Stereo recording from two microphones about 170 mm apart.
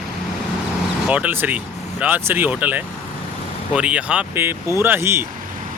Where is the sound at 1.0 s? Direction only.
10° right (ahead or behind).